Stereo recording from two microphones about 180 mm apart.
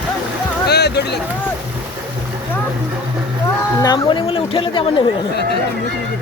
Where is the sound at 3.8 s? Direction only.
25° left (ahead or behind).